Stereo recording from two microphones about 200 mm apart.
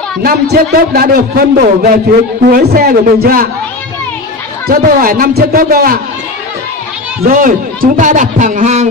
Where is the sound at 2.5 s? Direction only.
50° right (ahead or behind).